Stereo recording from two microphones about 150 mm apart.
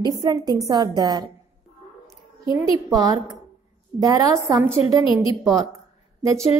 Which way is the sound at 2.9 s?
25° right (ahead or behind).